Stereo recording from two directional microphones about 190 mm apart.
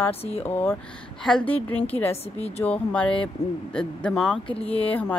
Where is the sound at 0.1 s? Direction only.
30° left (ahead or behind).